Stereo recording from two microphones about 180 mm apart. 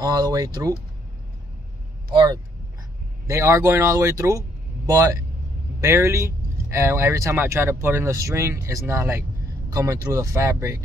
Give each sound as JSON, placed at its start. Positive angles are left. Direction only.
{"t": 0.0, "sound": "speech", "side_deg": -20}
{"t": 2.1, "sound": "speech", "side_deg": -20}